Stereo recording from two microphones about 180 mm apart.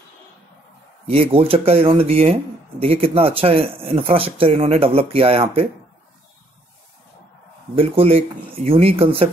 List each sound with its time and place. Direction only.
1.0 s speech: 30° right (ahead or behind)
7.7 s speech: 30° right (ahead or behind)